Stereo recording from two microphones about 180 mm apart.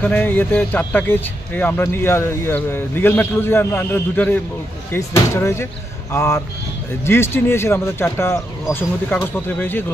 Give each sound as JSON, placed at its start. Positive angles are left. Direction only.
{"t": 0.0, "sound": "speech", "side_deg": 10}